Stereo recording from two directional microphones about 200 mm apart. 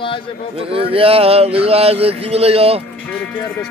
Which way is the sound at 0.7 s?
30° right (ahead or behind).